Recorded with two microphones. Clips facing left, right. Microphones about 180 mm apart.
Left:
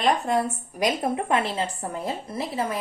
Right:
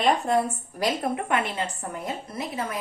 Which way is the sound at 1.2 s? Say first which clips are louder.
Left 2 dB; 30° left (ahead or behind).